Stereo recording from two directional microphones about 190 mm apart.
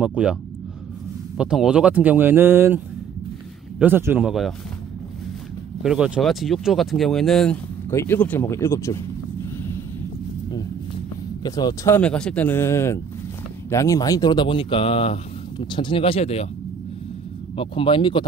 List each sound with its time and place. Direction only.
0.0 s speech: 5° right (ahead or behind)
1.4 s speech: 5° right (ahead or behind)
3.8 s speech: 10° right (ahead or behind)
5.8 s speech: 5° right (ahead or behind)
7.9 s speech: 10° left (ahead or behind)
11.4 s speech: 20° left (ahead or behind)
17.6 s speech: 25° left (ahead or behind)